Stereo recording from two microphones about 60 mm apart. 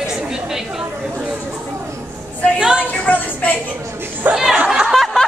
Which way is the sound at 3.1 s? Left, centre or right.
Left.